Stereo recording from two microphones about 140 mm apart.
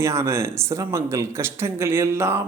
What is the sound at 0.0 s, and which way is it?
A man's voice, 20° right (ahead or behind).